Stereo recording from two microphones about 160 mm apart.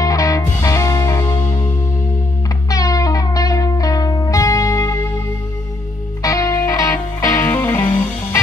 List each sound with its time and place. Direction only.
0.0 s music: 20° left (ahead or behind)
2.7 s music: 20° left (ahead or behind)
6.2 s music: 20° left (ahead or behind)